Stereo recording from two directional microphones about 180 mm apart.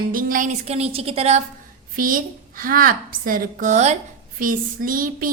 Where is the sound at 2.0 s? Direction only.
50° right (ahead or behind).